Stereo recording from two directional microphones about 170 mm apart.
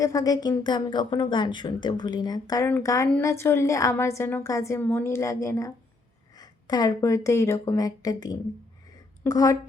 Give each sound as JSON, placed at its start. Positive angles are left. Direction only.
{"t": 0.0, "sound": "a woman's voice", "side_deg": 20}